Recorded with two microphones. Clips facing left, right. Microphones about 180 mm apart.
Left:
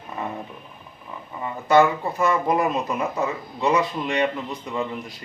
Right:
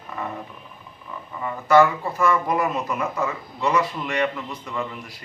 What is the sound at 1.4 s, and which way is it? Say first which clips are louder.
Speech: right 1 dB; 20° left (ahead or behind).